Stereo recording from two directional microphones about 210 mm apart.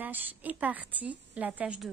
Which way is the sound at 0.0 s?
10° right (ahead or behind).